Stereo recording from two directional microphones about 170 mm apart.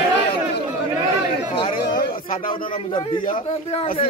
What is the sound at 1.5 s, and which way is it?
Speech, 30° left (ahead or behind).